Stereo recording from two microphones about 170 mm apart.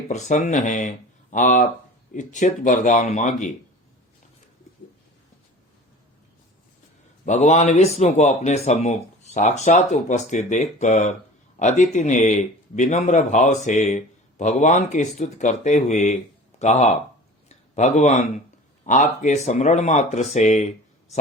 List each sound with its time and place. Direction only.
0.1 s speech: 45° left (ahead or behind)
7.3 s speech: 45° left (ahead or behind)
17.5 s a sound: 40° left (ahead or behind)
18.9 s speech: 45° left (ahead or behind)